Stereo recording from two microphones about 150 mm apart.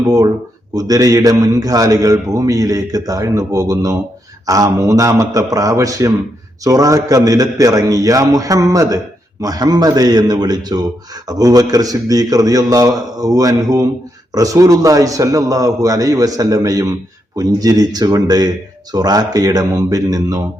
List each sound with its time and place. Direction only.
0.0 s a man's voice: 25° right (ahead or behind)